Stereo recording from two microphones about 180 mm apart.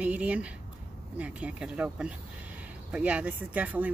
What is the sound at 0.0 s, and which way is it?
Speech, 5° right (ahead or behind).